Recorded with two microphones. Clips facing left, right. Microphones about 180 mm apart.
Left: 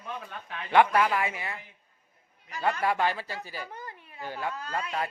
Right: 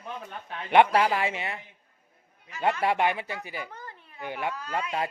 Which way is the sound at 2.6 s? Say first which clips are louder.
Right 2 dB; 20° right (ahead or behind).